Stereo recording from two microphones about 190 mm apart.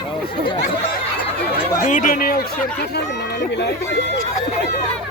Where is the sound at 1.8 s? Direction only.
40° left (ahead or behind).